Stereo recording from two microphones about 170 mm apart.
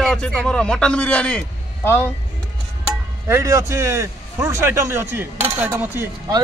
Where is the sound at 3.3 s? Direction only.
15° right (ahead or behind).